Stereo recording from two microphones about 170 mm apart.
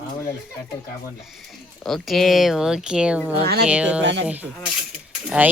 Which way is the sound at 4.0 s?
90° right.